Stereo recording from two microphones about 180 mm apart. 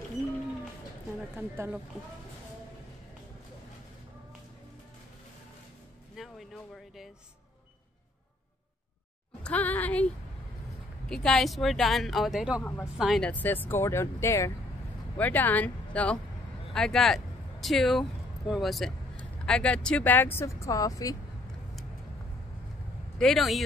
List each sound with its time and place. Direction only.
1.3 s a woman's voice: 5° right (ahead or behind)
6.1 s a sound: centre (ahead or behind)
9.4 s music: 10° left (ahead or behind)
11.1 s speech: 5° left (ahead or behind)
12.6 s speech: 10° left (ahead or behind)
23.1 s speech: centre (ahead or behind)